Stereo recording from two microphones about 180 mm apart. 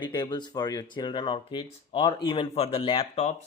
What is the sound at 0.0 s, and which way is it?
A man's voice, 25° left (ahead or behind).